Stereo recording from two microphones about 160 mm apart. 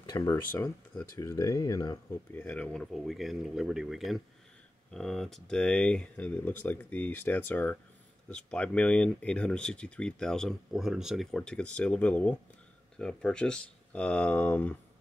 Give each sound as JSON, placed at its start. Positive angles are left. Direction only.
{"t": 0.1, "sound": "speech", "side_deg": 20}
{"t": 2.3, "sound": "speech", "side_deg": 10}